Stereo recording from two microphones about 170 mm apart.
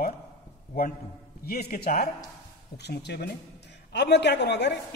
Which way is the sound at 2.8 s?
75° left (ahead or behind).